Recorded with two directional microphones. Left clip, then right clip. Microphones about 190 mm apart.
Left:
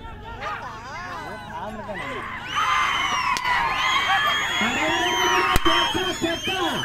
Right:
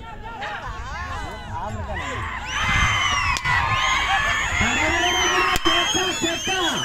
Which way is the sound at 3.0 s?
20° right (ahead or behind).